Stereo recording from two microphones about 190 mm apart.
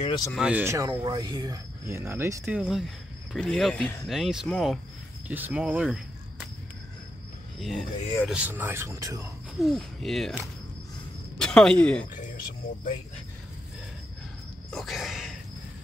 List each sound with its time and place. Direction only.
0.0 s speech: 25° left (ahead or behind)
0.3 s speech: 5° right (ahead or behind)
7.5 s speech: centre (ahead or behind); by 9.3 s 15° right (ahead or behind)
9.6 s speech: centre (ahead or behind)
11.3 s speech: 5° left (ahead or behind)
14.7 s a sound: centre (ahead or behind)